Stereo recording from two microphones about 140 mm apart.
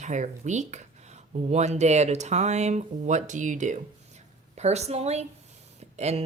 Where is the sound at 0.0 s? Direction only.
60° right (ahead or behind).